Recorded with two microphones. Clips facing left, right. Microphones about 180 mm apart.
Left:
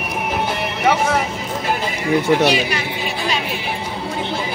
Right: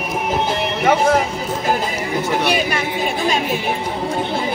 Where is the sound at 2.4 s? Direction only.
50° right (ahead or behind).